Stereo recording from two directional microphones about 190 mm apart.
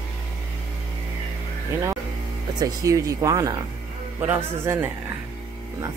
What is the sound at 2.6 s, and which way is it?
A man's voice, 20° right (ahead or behind).